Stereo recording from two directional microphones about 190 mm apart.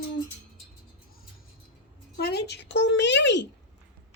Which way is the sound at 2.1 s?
55° left (ahead or behind).